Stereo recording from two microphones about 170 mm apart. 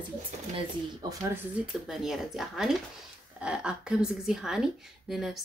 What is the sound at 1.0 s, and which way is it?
Speech, 25° right (ahead or behind).